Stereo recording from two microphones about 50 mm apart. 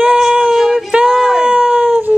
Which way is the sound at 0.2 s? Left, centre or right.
Centre.